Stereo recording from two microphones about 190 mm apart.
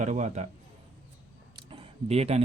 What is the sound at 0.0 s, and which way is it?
Speech, 40° right (ahead or behind).